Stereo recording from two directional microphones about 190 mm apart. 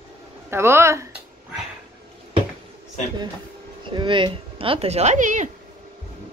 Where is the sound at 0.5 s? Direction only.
15° right (ahead or behind).